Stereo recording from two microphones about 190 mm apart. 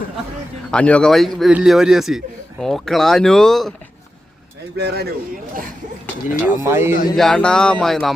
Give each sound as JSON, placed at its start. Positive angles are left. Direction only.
{"t": 0.7, "sound": "a man's voice", "side_deg": 5}
{"t": 4.8, "sound": "speech", "side_deg": -60}
{"t": 6.4, "sound": "speech", "side_deg": -10}
{"t": 7.2, "sound": "a man's voice", "side_deg": 5}